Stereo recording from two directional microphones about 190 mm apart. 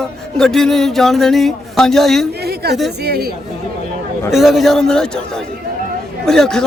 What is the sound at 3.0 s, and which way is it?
Speech, 55° right (ahead or behind).